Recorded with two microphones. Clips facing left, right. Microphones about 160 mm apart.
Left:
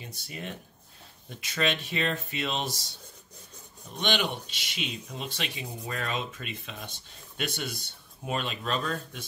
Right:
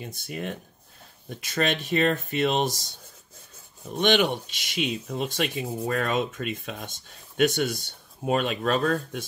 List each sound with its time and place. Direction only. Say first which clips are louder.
0.0 s speech: right 6 dB; 55° right (ahead or behind)
4.0 s speech: right 7 dB; 50° right (ahead or behind)